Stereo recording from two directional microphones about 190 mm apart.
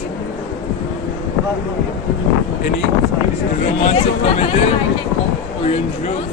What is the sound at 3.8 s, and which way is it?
Speech, 35° left (ahead or behind).